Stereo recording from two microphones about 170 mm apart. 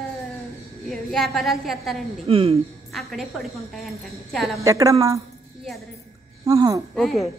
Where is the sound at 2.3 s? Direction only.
35° right (ahead or behind).